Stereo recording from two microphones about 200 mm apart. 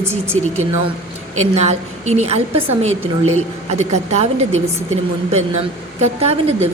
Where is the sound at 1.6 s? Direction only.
35° right (ahead or behind).